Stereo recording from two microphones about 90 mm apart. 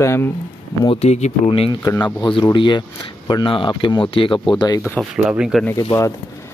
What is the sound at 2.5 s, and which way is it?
Speech, 65° left (ahead or behind).